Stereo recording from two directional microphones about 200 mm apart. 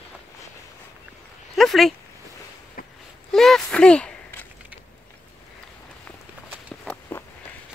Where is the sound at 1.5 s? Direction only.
Centre (ahead or behind).